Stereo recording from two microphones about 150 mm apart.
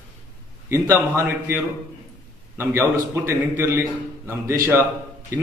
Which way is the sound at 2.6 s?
15° right (ahead or behind).